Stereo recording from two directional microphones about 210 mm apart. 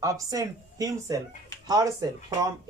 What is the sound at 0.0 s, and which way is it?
Speech, 15° right (ahead or behind).